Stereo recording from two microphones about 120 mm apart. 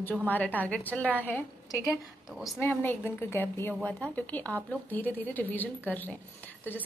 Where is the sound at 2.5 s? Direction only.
20° left (ahead or behind).